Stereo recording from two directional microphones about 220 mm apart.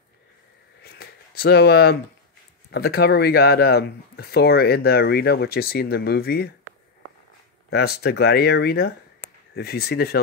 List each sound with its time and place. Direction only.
0.8 s a sound: 45° left (ahead or behind)
2.7 s speech: 45° left (ahead or behind)
7.7 s speech: 45° left (ahead or behind)